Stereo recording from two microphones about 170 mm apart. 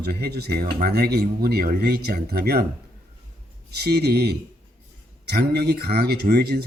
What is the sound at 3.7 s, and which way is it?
Speech, 70° right (ahead or behind).